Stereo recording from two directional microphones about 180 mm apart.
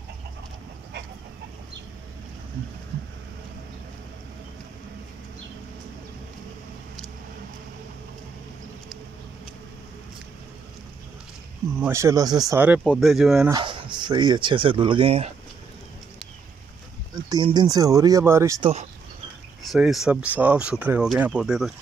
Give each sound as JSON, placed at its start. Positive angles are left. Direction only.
{"t": 11.8, "sound": "speech", "side_deg": -15}
{"t": 12.6, "sound": "speech", "side_deg": -5}
{"t": 13.5, "sound": "speech", "side_deg": -25}
{"t": 17.1, "sound": "a sound", "side_deg": -20}
{"t": 17.5, "sound": "speech", "side_deg": -20}
{"t": 18.6, "sound": "speech", "side_deg": -35}
{"t": 19.7, "sound": "speech", "side_deg": 0}